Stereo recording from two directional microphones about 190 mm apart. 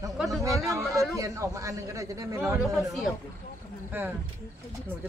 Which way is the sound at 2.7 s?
Centre (ahead or behind).